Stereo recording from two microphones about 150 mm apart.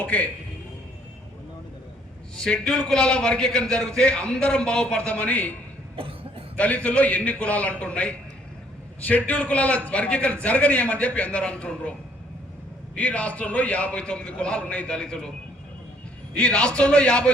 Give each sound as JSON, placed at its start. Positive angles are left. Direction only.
{"t": 0.0, "sound": "a man's voice", "side_deg": 10}
{"t": 2.3, "sound": "a man's voice", "side_deg": 5}
{"t": 6.0, "sound": "cough", "side_deg": -35}
{"t": 6.6, "sound": "a man's voice", "side_deg": 10}
{"t": 13.0, "sound": "a man's voice", "side_deg": 10}
{"t": 16.3, "sound": "a man's voice", "side_deg": 5}